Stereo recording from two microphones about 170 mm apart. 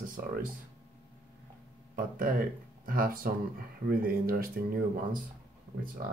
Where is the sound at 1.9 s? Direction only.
55° right (ahead or behind).